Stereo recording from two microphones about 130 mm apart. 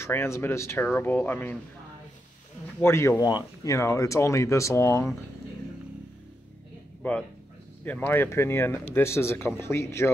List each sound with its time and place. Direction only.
0.0 s speech: 20° left (ahead or behind)
2.8 s speech: 20° left (ahead or behind)
7.0 s speech: 10° left (ahead or behind)